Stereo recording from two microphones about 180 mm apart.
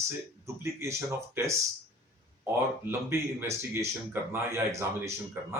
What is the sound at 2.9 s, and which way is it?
Speech, 15° right (ahead or behind).